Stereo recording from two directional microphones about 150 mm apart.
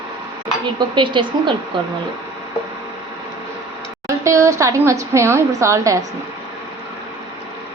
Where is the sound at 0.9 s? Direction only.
30° right (ahead or behind).